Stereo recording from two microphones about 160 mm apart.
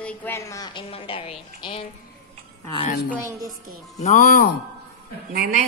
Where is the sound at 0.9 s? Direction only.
35° left (ahead or behind).